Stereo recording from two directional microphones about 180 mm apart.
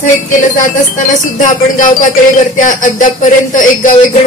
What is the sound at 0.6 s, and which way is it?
Speech, 45° left (ahead or behind).